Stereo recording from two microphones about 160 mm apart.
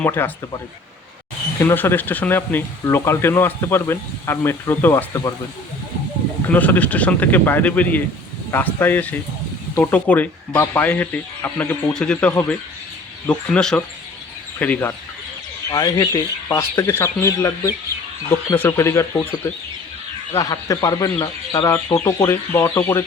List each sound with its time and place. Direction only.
0.0 s speech: 15° left (ahead or behind)
1.6 s speech: 15° left (ahead or behind)
6.5 s speech: 10° left (ahead or behind)
15.7 s speech: 25° left (ahead or behind)
20.3 s speech: 20° left (ahead or behind)